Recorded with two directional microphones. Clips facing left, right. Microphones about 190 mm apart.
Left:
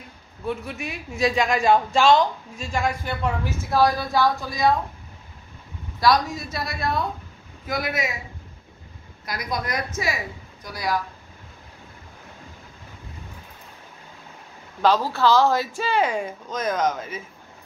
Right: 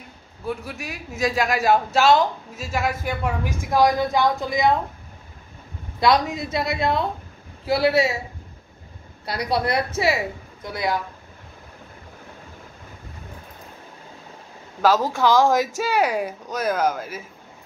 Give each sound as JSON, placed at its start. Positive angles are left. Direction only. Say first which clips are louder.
{"t": 0.5, "sound": "a man's voice", "louder": "left 1 dB", "side_deg": 0}
{"t": 5.9, "sound": "speech", "louder": "right 1 dB", "side_deg": -20}
{"t": 9.2, "sound": "speech", "louder": "right 6 dB", "side_deg": -30}
{"t": 14.8, "sound": "speech", "louder": "right 1 dB", "side_deg": -10}